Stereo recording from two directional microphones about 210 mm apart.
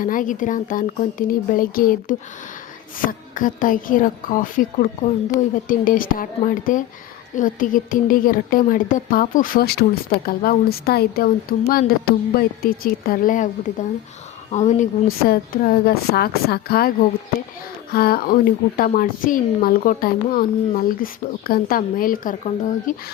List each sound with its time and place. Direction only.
0.0 s a woman's voice: 40° left (ahead or behind)
14.5 s a woman's voice: 35° left (ahead or behind)